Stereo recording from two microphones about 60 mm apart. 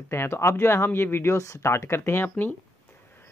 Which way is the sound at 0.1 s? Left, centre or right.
Left.